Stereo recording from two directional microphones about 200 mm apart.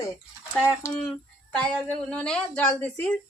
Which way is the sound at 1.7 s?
5° left (ahead or behind).